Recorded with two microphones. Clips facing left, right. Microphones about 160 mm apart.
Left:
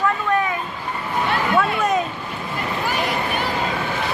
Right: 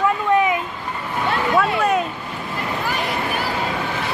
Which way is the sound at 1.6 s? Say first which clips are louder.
Right 2 dB; 5° right (ahead or behind).